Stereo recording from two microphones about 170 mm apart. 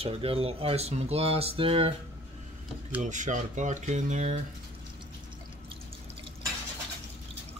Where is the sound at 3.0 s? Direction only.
45° right (ahead or behind).